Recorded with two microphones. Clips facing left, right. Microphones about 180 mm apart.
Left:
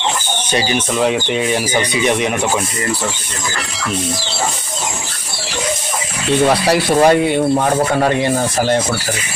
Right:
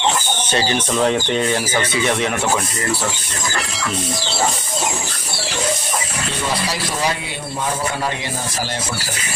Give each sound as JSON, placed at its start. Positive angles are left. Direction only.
{"t": 0.5, "sound": "speech", "side_deg": 15}
{"t": 6.4, "sound": "speech", "side_deg": 65}